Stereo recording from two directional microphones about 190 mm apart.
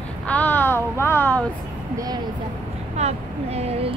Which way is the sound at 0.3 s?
10° left (ahead or behind).